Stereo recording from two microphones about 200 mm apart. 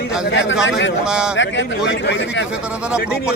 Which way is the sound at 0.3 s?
65° left (ahead or behind).